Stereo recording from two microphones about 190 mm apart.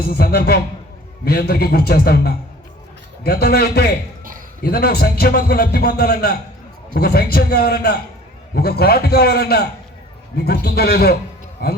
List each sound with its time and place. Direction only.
0.0 s a man's voice: 55° left (ahead or behind)